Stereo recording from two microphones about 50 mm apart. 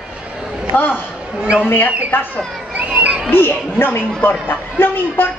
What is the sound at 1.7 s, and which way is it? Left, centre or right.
Speech, left.